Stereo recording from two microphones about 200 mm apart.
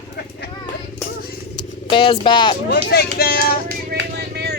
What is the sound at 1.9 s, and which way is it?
Speech, 25° left (ahead or behind).